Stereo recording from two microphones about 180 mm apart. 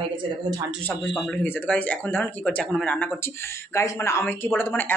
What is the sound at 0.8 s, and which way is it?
A woman's voice, 10° left (ahead or behind).